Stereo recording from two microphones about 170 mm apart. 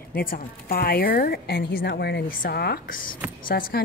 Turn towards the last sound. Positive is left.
turn(degrees=60)  # may be behind; listen again after turning